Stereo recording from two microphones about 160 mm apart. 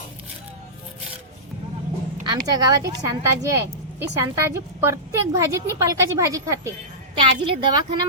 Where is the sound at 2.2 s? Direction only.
25° right (ahead or behind).